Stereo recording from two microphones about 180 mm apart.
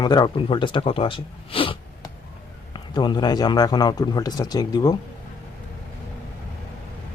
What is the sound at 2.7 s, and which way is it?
Speech, 25° left (ahead or behind).